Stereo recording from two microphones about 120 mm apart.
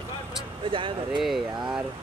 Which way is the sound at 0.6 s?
45° right (ahead or behind).